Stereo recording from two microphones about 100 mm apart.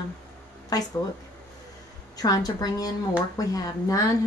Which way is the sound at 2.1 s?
40° left (ahead or behind).